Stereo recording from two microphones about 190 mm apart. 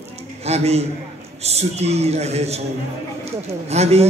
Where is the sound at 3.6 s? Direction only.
35° right (ahead or behind).